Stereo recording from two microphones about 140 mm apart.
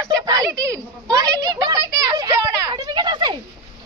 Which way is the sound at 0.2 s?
25° right (ahead or behind).